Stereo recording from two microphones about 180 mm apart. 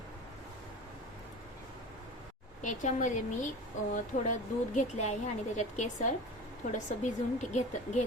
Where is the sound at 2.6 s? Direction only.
40° left (ahead or behind).